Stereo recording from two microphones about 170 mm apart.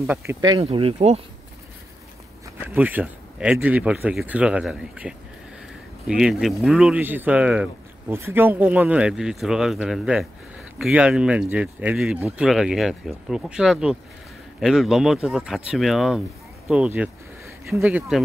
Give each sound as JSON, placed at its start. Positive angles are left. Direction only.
{"t": 0.0, "sound": "speech", "side_deg": -10}
{"t": 0.5, "sound": "speech", "side_deg": -35}
{"t": 2.6, "sound": "speech", "side_deg": -10}